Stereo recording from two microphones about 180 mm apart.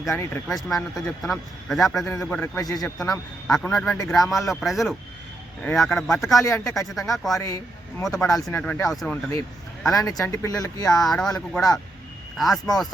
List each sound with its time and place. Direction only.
0.1 s speech: 15° left (ahead or behind)
0.5 s speech: 5° left (ahead or behind)
2.6 s speech: 20° left (ahead or behind)
3.4 s speech: 5° left (ahead or behind)
6.3 s speech: 15° left (ahead or behind)
6.9 s speech: centre (ahead or behind)
7.3 s speech: 15° left (ahead or behind)
8.0 s speech: 5° left (ahead or behind)
9.9 s speech: 20° left (ahead or behind)
10.8 s speech: centre (ahead or behind)